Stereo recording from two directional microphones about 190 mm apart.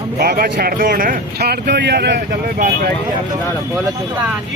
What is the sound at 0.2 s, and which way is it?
Speech, 50° right (ahead or behind).